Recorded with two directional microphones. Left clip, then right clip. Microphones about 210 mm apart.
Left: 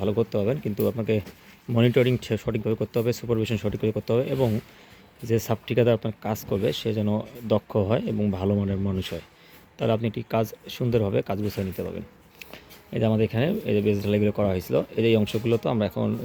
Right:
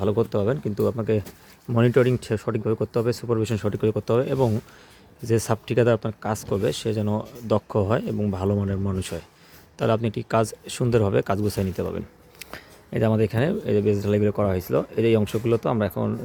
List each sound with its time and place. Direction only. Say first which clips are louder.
0.0 s speech: right 2 dB; 10° right (ahead or behind)